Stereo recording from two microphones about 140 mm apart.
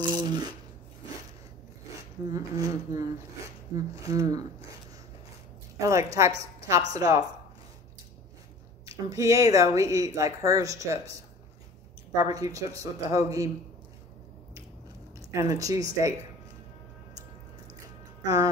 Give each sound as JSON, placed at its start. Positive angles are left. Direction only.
{"t": 0.1, "sound": "a sound", "side_deg": -30}
{"t": 2.2, "sound": "speech", "side_deg": -25}
{"t": 5.8, "sound": "speech", "side_deg": -25}
{"t": 9.1, "sound": "speech", "side_deg": -25}
{"t": 12.2, "sound": "speech", "side_deg": -25}
{"t": 15.1, "sound": "speech", "side_deg": -25}
{"t": 18.2, "sound": "speech", "side_deg": -25}